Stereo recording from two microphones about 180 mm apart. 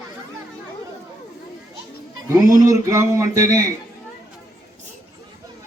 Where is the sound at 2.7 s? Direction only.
15° right (ahead or behind).